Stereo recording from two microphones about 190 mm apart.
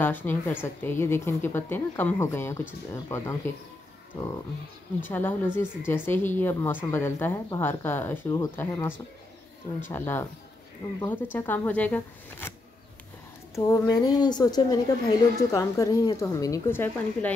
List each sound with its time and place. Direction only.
0.0 s a woman's voice: 10° left (ahead or behind)
5.0 s a woman's voice: 10° left (ahead or behind)
13.7 s a woman's voice: 20° left (ahead or behind)